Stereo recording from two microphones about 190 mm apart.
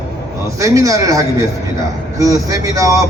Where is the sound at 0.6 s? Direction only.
15° right (ahead or behind).